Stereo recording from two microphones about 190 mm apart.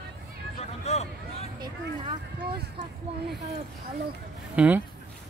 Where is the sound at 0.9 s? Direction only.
35° left (ahead or behind).